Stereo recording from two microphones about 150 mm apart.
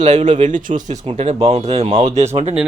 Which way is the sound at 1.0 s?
45° right (ahead or behind).